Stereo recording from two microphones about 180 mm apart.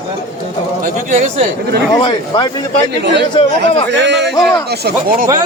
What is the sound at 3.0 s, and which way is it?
Speech, 70° right (ahead or behind).